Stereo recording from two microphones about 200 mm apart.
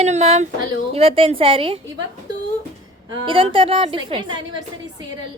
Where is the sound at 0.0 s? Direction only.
35° right (ahead or behind).